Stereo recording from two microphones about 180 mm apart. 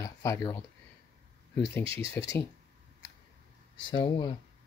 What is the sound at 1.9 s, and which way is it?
Speech, 70° left (ahead or behind).